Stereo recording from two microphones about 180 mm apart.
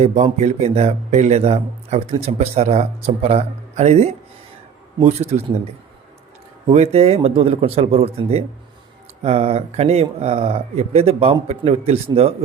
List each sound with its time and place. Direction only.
0.0 s a man's voice: 40° right (ahead or behind)
6.7 s a man's voice: 35° right (ahead or behind)